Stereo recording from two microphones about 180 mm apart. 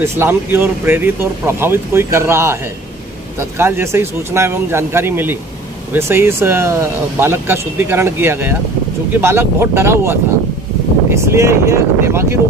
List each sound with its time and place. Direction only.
0.0 s speech: 15° right (ahead or behind)